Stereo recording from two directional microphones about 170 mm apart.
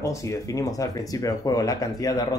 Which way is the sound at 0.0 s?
20° left (ahead or behind).